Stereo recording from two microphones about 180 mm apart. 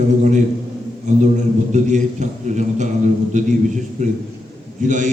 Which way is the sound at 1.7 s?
40° right (ahead or behind).